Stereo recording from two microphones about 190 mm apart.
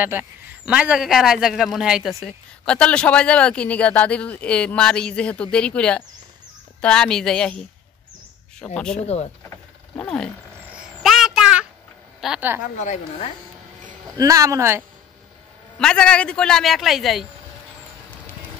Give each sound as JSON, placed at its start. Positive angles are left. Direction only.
{"t": 0.0, "sound": "speech", "side_deg": -10}
{"t": 8.7, "sound": "speech", "side_deg": 5}
{"t": 9.0, "sound": "a woman's voice", "side_deg": 35}
{"t": 9.9, "sound": "speech", "side_deg": 5}
{"t": 10.7, "sound": "a sound", "side_deg": -5}
{"t": 12.2, "sound": "speech", "side_deg": -5}
{"t": 12.7, "sound": "a woman's voice", "side_deg": 40}
{"t": 14.1, "sound": "speech", "side_deg": -15}
{"t": 15.8, "sound": "speech", "side_deg": 5}